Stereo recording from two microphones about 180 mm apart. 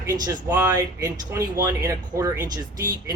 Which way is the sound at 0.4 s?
15° right (ahead or behind).